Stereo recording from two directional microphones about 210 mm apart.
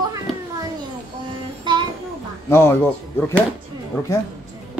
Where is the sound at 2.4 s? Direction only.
10° left (ahead or behind).